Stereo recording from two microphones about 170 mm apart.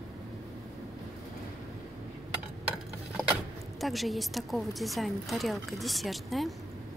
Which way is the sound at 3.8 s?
Centre (ahead or behind).